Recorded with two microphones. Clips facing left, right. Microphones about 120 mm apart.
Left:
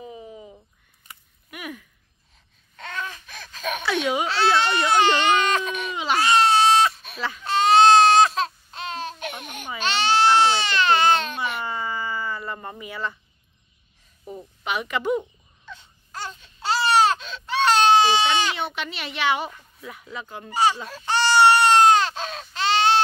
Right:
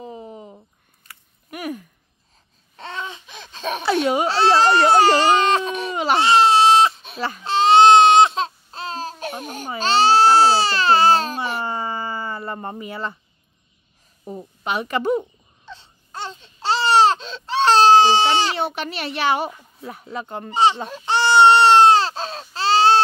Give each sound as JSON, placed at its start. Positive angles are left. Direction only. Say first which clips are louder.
{"t": 0.0, "sound": "a sound", "louder": "right 3 dB", "side_deg": -40}
{"t": 2.7, "sound": "baby cry", "louder": "right 2 dB", "side_deg": -30}
{"t": 7.2, "sound": "speech", "louder": "right 3 dB", "side_deg": -40}
{"t": 7.4, "sound": "baby cry", "louder": "right 3 dB", "side_deg": -25}
{"t": 14.2, "sound": "a sound", "louder": "right 3 dB", "side_deg": -40}
{"t": 19.8, "sound": "speech", "louder": "right 5 dB", "side_deg": -35}
{"t": 20.4, "sound": "speech", "louder": "right 3 dB", "side_deg": -25}
{"t": 20.9, "sound": "baby cry", "louder": "right 3 dB", "side_deg": -20}